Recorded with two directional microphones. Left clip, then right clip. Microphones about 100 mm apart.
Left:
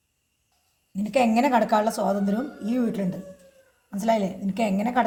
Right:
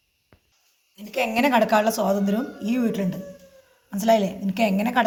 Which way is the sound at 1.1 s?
35° left (ahead or behind).